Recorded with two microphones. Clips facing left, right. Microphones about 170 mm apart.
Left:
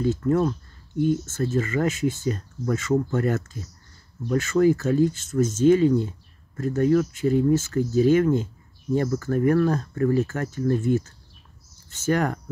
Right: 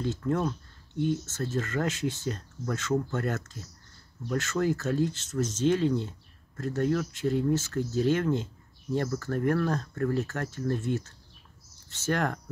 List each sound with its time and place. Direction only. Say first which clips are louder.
0.0 s speech: left 7 dB; 5° left (ahead or behind)
12.1 s speech: left 5 dB; 5° left (ahead or behind)